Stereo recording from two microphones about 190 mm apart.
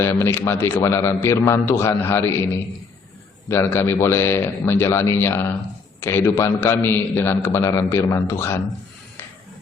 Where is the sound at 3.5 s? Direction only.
15° left (ahead or behind).